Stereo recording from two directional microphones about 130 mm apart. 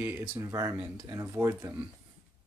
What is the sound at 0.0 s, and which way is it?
Speech, 15° right (ahead or behind).